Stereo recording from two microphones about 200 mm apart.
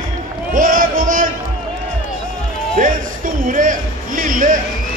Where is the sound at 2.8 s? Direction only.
45° right (ahead or behind).